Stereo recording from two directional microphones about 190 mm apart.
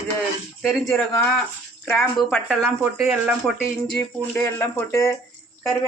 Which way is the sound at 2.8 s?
5° right (ahead or behind).